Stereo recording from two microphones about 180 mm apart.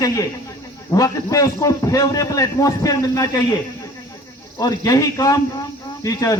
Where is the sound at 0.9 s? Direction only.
20° left (ahead or behind).